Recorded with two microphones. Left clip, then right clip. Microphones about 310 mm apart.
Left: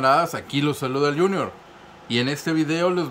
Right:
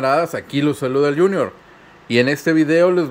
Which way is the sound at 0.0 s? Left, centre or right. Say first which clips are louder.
Right 2 dB; centre.